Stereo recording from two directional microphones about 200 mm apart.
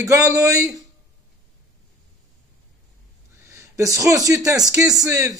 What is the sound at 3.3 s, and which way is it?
Speech, 15° right (ahead or behind).